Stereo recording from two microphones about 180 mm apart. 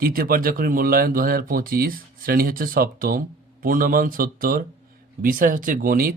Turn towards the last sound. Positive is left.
turn(degrees=-50)  # may be behind; listen again after turning